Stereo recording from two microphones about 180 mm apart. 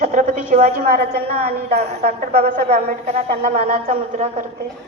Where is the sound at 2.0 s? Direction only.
60° right (ahead or behind).